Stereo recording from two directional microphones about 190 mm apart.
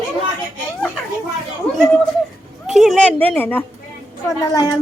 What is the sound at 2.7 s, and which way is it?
Speech, centre (ahead or behind).